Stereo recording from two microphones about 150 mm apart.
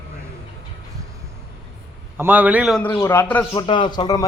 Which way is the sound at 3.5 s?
30° left (ahead or behind).